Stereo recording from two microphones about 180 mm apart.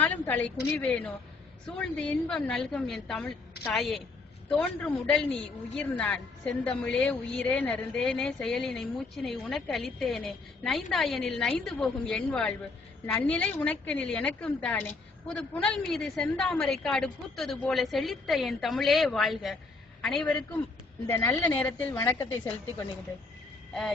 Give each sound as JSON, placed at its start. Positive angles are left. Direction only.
{"t": 0.0, "sound": "a woman's voice", "side_deg": 10}
{"t": 21.1, "sound": "a woman's voice", "side_deg": 15}